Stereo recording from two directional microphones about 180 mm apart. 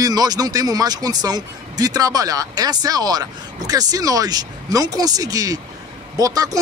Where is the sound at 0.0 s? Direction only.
20° right (ahead or behind).